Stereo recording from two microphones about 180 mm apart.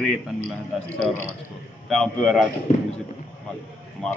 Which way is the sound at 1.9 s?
Centre (ahead or behind).